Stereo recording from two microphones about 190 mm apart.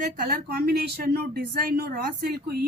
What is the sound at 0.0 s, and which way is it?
Speech, 45° right (ahead or behind).